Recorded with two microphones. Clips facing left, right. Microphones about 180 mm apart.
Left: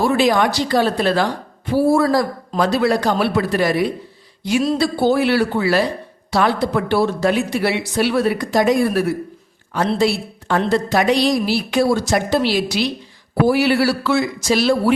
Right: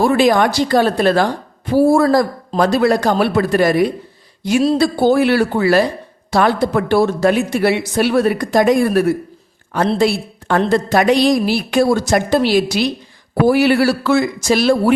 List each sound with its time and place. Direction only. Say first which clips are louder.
0.0 s a woman's voice: right 3 dB; 50° right (ahead or behind)